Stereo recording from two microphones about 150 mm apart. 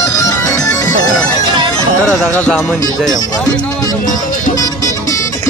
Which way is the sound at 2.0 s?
5° left (ahead or behind).